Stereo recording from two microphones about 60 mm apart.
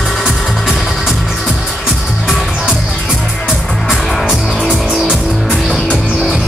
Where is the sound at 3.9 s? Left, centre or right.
Centre.